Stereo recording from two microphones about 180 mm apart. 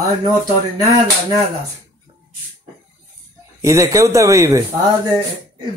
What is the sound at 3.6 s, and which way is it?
A man's voice, 15° right (ahead or behind).